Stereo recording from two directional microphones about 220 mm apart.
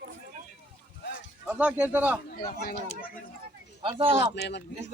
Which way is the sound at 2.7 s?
35° left (ahead or behind).